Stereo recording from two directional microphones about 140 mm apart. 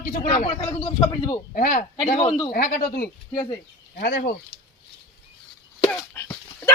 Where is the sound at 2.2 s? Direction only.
35° left (ahead or behind).